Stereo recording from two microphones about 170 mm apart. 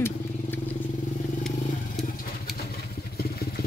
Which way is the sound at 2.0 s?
60° left (ahead or behind).